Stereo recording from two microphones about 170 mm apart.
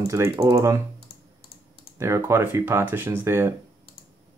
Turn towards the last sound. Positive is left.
turn(degrees=-15)  # may be behind; listen again after turning